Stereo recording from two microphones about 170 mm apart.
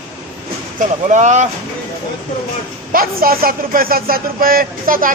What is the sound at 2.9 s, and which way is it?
Speech, 60° right (ahead or behind).